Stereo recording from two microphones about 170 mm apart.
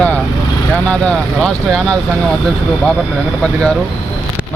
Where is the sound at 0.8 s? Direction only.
5° left (ahead or behind).